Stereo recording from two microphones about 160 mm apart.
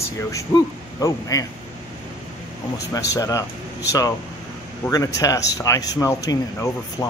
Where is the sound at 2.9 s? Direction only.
20° left (ahead or behind).